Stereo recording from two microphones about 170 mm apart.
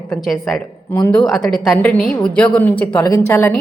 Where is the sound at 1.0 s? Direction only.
15° left (ahead or behind).